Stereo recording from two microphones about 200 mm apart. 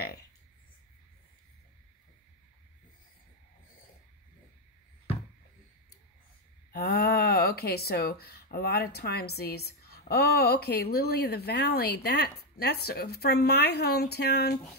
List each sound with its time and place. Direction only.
6.7 s a woman's voice: 50° left (ahead or behind)